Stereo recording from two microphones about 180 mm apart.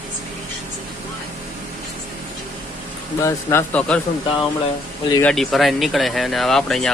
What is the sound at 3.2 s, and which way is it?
Speech, 15° left (ahead or behind).